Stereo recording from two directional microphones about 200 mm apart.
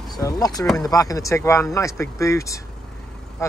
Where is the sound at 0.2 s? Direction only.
20° left (ahead or behind).